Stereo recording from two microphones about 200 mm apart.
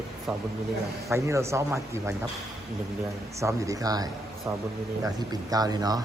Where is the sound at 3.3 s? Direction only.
15° right (ahead or behind).